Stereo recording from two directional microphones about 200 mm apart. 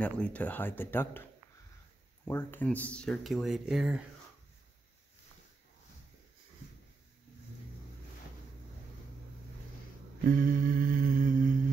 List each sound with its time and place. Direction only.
0.0 s speech: 5° left (ahead or behind)
2.2 s speech: 10° left (ahead or behind)
10.2 s humming: 45° right (ahead or behind)